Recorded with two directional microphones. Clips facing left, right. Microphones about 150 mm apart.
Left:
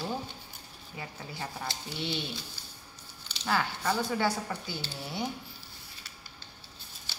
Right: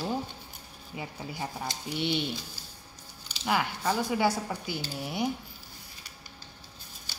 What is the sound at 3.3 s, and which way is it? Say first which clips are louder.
A woman's voice: right 2 dB; 15° right (ahead or behind).